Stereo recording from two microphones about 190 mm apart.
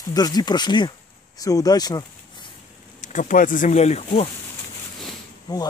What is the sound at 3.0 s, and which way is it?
Speech, 40° left (ahead or behind).